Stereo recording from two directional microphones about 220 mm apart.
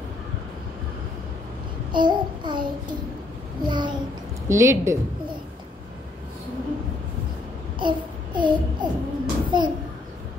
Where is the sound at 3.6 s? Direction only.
20° right (ahead or behind).